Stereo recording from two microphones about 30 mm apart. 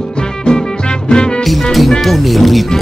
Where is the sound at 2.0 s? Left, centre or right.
Centre.